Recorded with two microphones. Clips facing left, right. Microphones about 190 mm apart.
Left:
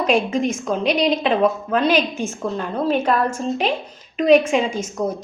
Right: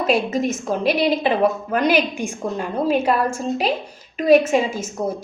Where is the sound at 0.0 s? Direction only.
5° right (ahead or behind).